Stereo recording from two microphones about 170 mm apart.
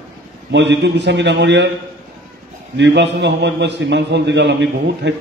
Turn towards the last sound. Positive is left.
turn(degrees=-90)